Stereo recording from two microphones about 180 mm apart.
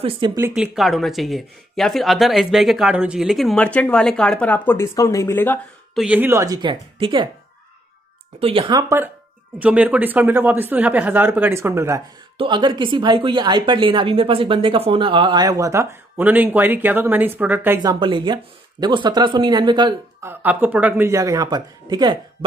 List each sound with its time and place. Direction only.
0.4 s speech: 15° right (ahead or behind)
0.7 s speech: centre (ahead or behind)
5.9 s a woman's voice: 10° right (ahead or behind); by 7.2 s 25° right (ahead or behind)
8.4 s a woman's voice: 30° right (ahead or behind); by 12.0 s 15° right (ahead or behind)
12.4 s a woman's voice: 25° right (ahead or behind); by 17.7 s 10° right (ahead or behind)
17.8 s a woman's voice: 25° right (ahead or behind)
20.2 s a woman's voice: 10° right (ahead or behind)